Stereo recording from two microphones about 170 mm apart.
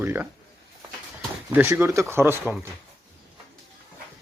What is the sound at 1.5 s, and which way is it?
Speech, 15° right (ahead or behind).